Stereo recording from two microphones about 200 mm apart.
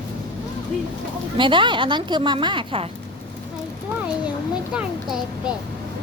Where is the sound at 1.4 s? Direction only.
25° right (ahead or behind).